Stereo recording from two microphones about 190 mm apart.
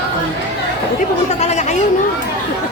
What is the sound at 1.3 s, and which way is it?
Chatter, 35° left (ahead or behind).